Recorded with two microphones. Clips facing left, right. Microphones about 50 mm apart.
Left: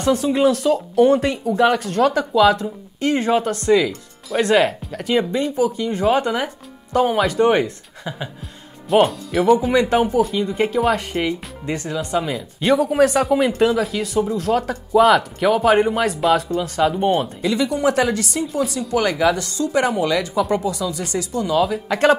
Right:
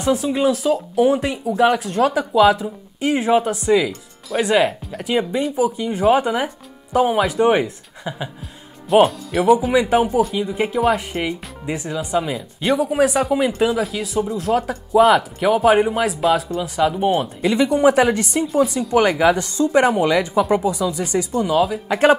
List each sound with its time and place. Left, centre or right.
0.0 s speech: centre
17.6 s speech: right
21.5 s speech: centre
21.8 s speech: centre